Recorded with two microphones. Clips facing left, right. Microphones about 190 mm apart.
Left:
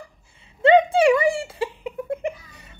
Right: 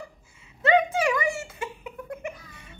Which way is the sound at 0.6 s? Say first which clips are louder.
Left 7 dB; 30° left (ahead or behind).